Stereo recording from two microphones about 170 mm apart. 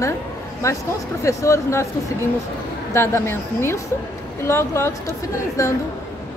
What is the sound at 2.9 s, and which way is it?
A woman's voice, 15° left (ahead or behind).